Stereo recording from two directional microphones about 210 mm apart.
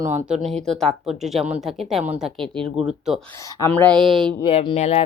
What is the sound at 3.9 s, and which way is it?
Speech, 20° right (ahead or behind).